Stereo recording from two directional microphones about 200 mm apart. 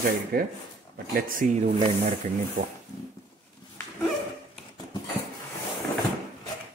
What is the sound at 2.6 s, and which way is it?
Speech, 40° right (ahead or behind).